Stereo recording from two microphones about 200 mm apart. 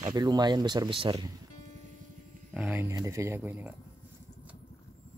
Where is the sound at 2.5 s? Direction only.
5° right (ahead or behind).